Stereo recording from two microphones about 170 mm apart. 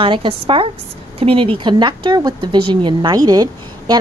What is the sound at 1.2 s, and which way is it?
Speech, 35° right (ahead or behind).